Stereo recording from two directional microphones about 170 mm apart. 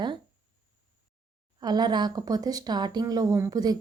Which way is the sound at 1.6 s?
25° right (ahead or behind).